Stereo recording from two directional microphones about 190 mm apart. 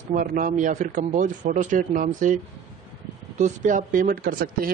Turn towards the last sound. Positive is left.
turn(degrees=-50)  # may be behind; listen again after turning